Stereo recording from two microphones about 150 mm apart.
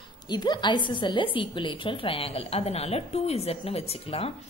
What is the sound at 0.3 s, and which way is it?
A woman's voice, 30° left (ahead or behind).